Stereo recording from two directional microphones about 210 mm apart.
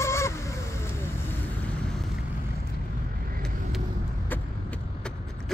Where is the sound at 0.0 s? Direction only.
15° left (ahead or behind).